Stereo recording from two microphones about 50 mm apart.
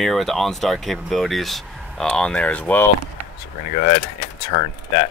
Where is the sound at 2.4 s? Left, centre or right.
Left.